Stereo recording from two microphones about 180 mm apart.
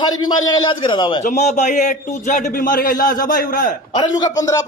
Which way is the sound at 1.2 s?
40° left (ahead or behind).